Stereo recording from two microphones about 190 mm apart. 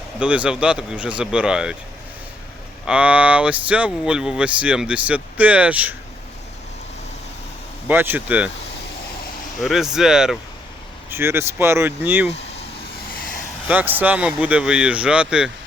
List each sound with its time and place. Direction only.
0.2 s speech: 5° right (ahead or behind)
2.8 s speech: 5° right (ahead or behind)
7.9 s speech: 10° right (ahead or behind)
9.6 s speech: centre (ahead or behind)
13.1 s a sound: 45° left (ahead or behind)
13.7 s speech: 10° right (ahead or behind)